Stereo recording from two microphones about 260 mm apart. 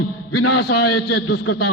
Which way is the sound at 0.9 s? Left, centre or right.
Left.